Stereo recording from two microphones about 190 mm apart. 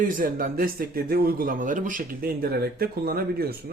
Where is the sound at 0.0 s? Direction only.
45° right (ahead or behind).